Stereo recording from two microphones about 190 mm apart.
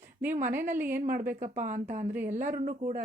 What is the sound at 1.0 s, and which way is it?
Speech, 45° right (ahead or behind).